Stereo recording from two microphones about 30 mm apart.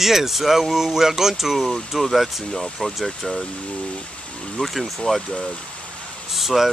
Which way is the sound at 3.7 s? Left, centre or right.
Left.